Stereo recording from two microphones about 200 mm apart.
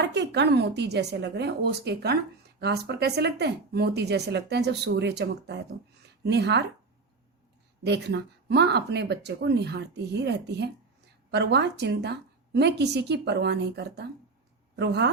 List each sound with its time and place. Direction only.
0.0 s speech: 55° right (ahead or behind)
7.9 s speech: 55° right (ahead or behind)